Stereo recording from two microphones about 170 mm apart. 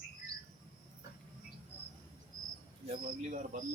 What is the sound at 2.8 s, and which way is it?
Speech, 45° right (ahead or behind).